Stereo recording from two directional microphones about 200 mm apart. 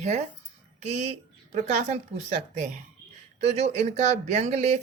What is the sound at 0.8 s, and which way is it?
Speech, 35° right (ahead or behind).